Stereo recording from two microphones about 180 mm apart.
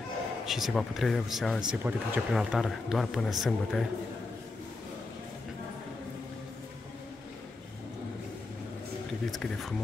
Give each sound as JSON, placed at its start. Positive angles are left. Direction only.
{"t": 0.5, "sound": "speech", "side_deg": 0}
{"t": 9.3, "sound": "speech", "side_deg": 0}